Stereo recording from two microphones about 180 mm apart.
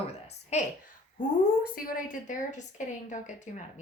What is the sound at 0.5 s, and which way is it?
Speech, 40° left (ahead or behind).